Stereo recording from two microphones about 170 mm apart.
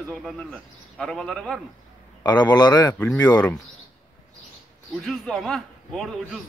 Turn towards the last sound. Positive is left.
turn(degrees=0)  # may be behind; listen again after turning